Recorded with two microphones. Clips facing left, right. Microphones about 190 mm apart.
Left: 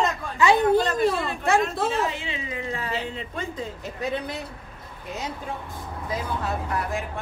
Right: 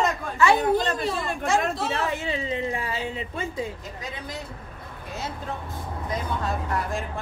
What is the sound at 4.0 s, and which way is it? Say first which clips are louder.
Speech: left 8 dB; 65° left (ahead or behind).